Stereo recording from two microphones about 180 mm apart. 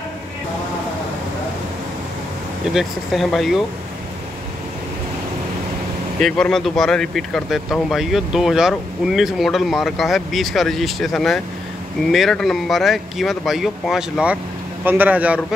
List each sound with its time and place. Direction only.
2.7 s speech: centre (ahead or behind)
6.1 s a man's voice: 5° left (ahead or behind)